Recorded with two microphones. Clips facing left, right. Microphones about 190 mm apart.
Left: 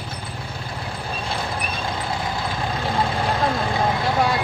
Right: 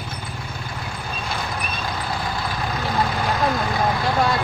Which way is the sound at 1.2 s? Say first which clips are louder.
Left 1 dB; 30° left (ahead or behind).